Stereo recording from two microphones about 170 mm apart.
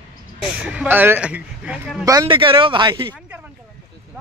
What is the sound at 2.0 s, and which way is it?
Speech, 25° right (ahead or behind).